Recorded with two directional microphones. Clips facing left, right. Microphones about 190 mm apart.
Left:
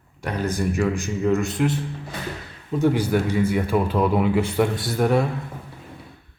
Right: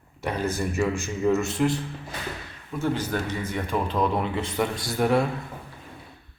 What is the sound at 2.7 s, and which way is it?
A man's voice, 15° left (ahead or behind).